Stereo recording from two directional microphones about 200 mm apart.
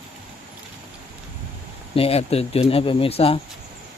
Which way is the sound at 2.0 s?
30° left (ahead or behind).